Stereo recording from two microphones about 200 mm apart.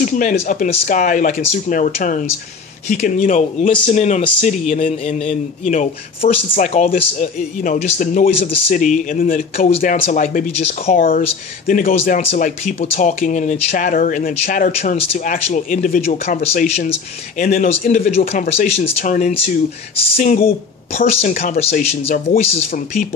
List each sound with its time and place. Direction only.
0.0 s speech: 40° left (ahead or behind)
9.6 s speech: 30° left (ahead or behind)
21.2 s speech: 45° left (ahead or behind)
21.5 s speech: 30° left (ahead or behind)